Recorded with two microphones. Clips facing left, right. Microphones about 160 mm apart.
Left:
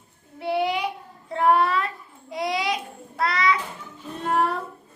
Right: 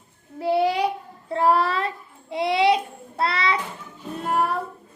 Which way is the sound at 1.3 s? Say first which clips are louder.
Even; 30° right (ahead or behind).